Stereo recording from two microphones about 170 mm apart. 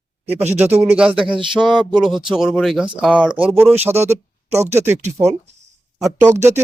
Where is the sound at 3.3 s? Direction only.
30° right (ahead or behind).